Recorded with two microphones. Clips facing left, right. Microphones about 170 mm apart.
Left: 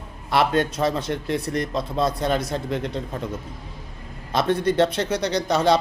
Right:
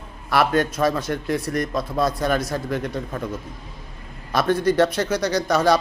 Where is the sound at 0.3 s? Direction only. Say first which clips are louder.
Right 1 dB; 25° left (ahead or behind).